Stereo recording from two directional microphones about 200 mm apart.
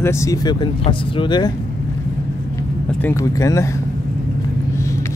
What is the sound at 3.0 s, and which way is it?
Speech, 15° left (ahead or behind).